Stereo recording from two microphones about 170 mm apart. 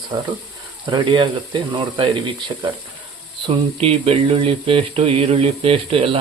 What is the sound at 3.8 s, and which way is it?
Speech, 35° right (ahead or behind).